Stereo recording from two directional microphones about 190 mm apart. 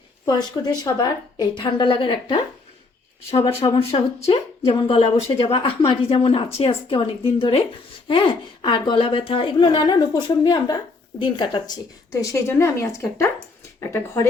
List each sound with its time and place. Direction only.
0.3 s speech: 20° left (ahead or behind)